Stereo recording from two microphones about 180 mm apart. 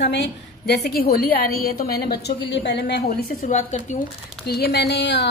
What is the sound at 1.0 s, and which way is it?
A woman's voice, 55° left (ahead or behind).